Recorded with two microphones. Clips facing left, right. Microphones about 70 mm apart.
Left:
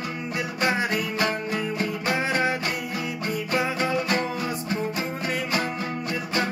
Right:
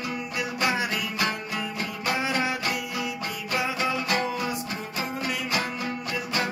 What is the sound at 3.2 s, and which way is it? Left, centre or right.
Music, left.